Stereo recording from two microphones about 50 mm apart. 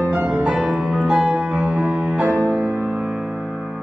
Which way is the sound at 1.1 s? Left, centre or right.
Centre.